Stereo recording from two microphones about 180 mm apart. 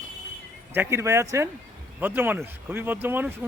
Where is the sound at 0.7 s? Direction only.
15° right (ahead or behind).